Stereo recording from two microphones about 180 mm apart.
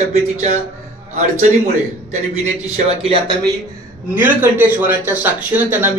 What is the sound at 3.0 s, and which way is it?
Speech, 30° right (ahead or behind).